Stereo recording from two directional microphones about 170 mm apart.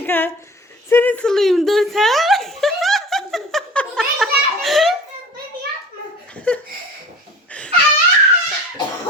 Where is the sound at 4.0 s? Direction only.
Centre (ahead or behind).